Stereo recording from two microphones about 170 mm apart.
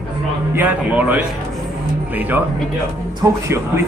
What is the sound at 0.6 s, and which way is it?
Speech, 10° right (ahead or behind).